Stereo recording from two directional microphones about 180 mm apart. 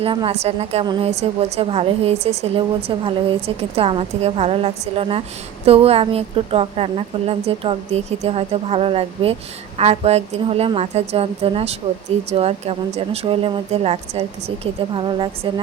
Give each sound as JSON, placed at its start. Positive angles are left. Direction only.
{"t": 0.0, "sound": "a woman's voice", "side_deg": -30}